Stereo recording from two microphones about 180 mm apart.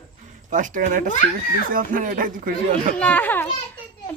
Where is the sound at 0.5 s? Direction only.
45° right (ahead or behind).